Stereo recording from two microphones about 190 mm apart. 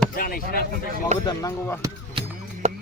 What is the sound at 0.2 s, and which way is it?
Speech, 50° left (ahead or behind).